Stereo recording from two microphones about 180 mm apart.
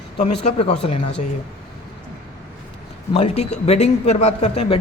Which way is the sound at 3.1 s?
35° left (ahead or behind).